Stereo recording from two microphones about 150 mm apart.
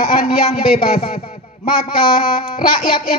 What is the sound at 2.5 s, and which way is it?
Speech, 30° left (ahead or behind).